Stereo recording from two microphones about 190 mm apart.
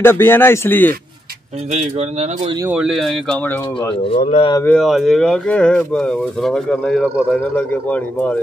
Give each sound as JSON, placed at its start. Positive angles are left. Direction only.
{"t": 0.0, "sound": "speech", "side_deg": 10}
{"t": 1.7, "sound": "speech", "side_deg": -35}
{"t": 2.6, "sound": "speech", "side_deg": -5}
{"t": 3.9, "sound": "speech", "side_deg": 30}
{"t": 4.6, "sound": "speech", "side_deg": 0}